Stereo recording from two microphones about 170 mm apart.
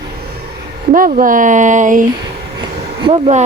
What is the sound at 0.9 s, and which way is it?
Speech, 55° right (ahead or behind).